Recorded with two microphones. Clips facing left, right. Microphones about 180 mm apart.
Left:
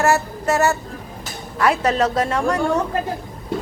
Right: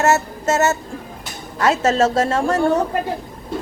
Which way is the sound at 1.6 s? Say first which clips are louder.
Right 2 dB; 25° right (ahead or behind).